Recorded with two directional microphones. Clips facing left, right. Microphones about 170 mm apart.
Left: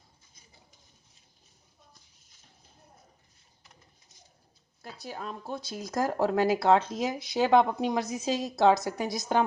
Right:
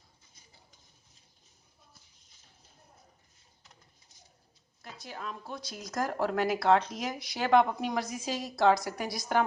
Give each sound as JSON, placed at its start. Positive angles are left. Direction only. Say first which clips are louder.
{"t": 4.8, "sound": "speech", "louder": "left 3 dB", "side_deg": 35}